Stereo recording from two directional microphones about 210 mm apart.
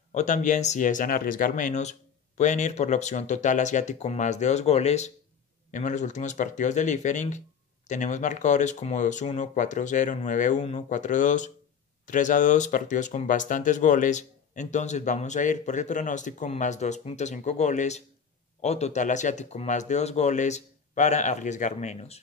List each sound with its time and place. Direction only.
0.1 s speech: 35° left (ahead or behind)